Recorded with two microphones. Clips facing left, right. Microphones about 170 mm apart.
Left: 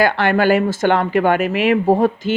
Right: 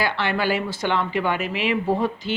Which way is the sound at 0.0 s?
50° left (ahead or behind).